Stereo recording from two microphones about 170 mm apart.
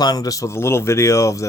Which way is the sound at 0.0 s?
20° left (ahead or behind).